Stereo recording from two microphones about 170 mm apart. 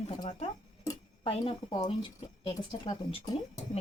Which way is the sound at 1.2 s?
30° left (ahead or behind).